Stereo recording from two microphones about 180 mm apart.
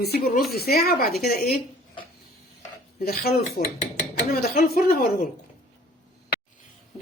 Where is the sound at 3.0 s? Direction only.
55° left (ahead or behind).